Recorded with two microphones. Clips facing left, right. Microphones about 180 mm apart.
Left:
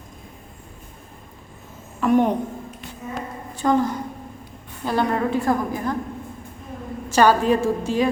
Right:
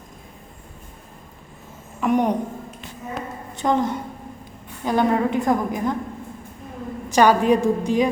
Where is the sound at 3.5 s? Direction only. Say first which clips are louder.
Left 1 dB; 20° right (ahead or behind).